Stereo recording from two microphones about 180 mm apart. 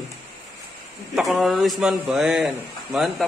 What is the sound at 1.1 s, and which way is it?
A man's voice, centre (ahead or behind).